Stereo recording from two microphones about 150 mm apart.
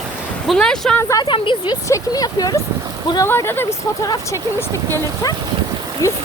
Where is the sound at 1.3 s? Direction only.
35° left (ahead or behind).